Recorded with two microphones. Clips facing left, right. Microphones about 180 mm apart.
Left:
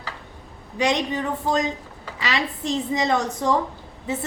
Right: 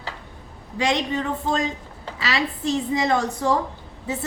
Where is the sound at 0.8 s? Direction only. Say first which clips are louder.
Even; 20° left (ahead or behind).